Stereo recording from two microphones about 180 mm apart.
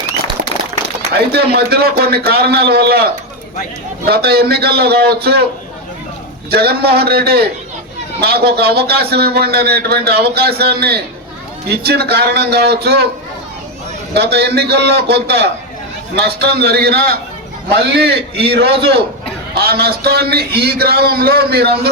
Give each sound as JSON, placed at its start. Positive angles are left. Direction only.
{"t": 1.1, "sound": "speech", "side_deg": -60}
{"t": 6.5, "sound": "speech", "side_deg": -60}
{"t": 14.1, "sound": "a man's voice", "side_deg": -60}